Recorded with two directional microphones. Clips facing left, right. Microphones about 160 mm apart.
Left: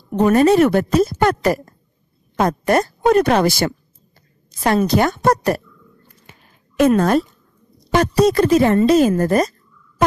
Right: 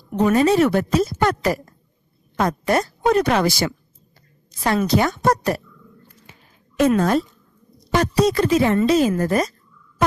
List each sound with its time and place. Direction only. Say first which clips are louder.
0.1 s speech: left 3 dB; 55° left (ahead or behind)
4.5 s speech: left 3 dB; 45° left (ahead or behind)
7.0 s speech: left 3 dB; 60° left (ahead or behind)
7.9 s speech: left 3 dB; 50° left (ahead or behind)